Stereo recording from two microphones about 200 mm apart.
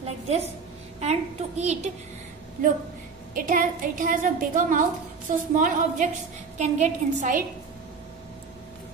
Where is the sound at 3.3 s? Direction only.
45° right (ahead or behind).